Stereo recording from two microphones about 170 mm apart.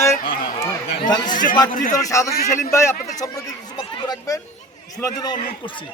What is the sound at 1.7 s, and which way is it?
Speech, 50° left (ahead or behind).